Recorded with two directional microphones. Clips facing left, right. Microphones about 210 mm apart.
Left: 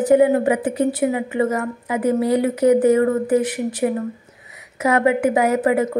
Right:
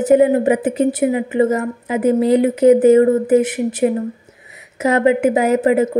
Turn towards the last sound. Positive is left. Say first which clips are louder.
# right 3 dB
turn(degrees=-25)  # may be behind; listen again after turning